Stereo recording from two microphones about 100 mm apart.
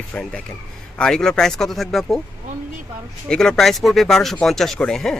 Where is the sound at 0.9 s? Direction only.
5° left (ahead or behind).